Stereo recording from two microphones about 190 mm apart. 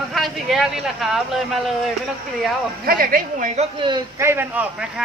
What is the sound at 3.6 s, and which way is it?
Speech, 25° right (ahead or behind).